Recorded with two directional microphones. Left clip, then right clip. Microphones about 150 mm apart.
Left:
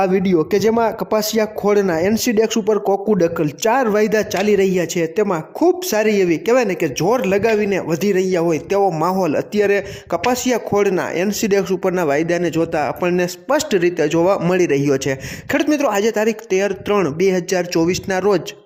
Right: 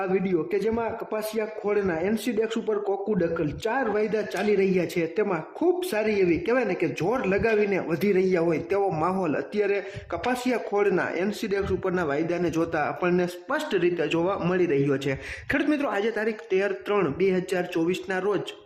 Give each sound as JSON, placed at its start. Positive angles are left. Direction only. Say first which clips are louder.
{"t": 0.0, "sound": "speech", "louder": "left 9 dB", "side_deg": 45}